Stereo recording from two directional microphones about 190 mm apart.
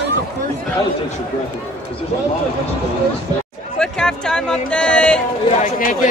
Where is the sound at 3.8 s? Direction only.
5° left (ahead or behind).